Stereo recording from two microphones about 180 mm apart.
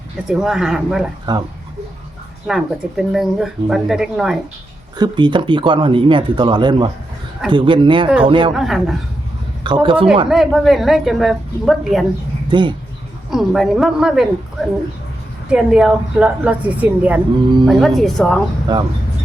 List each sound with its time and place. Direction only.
0.3 s speech: 5° right (ahead or behind)
1.3 s speech: 25° right (ahead or behind)
2.5 s speech: centre (ahead or behind)
4.9 s speech: 25° right (ahead or behind)
8.5 s speech: centre (ahead or behind)
9.6 s speech: 25° right (ahead or behind)
10.2 s speech: centre (ahead or behind)
12.5 s speech: 25° right (ahead or behind)
13.3 s speech: centre (ahead or behind)
15.4 s a woman's voice: 5° right (ahead or behind)
18.7 s speech: 25° right (ahead or behind)